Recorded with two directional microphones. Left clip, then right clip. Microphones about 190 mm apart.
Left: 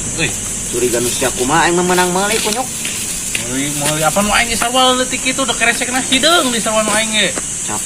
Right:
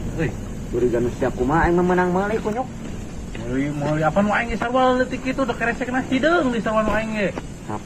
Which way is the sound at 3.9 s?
30° left (ahead or behind).